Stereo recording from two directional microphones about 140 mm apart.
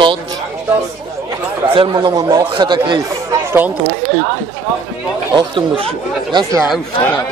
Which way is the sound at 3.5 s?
15° right (ahead or behind).